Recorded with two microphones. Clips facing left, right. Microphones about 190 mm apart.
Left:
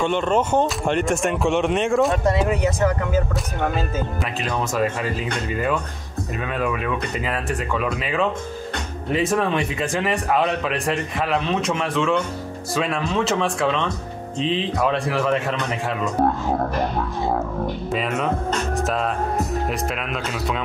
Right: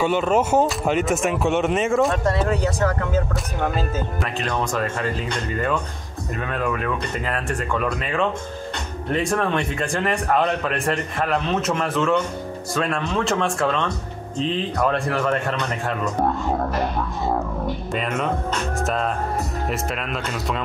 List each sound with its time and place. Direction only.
0.0 s speech: 5° right (ahead or behind)
2.2 s speech: 15° left (ahead or behind)
4.4 s speech: 5° left (ahead or behind)
6.4 s speech: 10° left (ahead or behind)
17.9 s speech: centre (ahead or behind)